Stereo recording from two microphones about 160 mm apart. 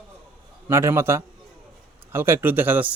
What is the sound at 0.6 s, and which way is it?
A man's voice, 15° right (ahead or behind).